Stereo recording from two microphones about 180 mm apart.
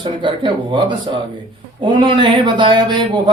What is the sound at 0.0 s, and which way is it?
Speech, 25° right (ahead or behind).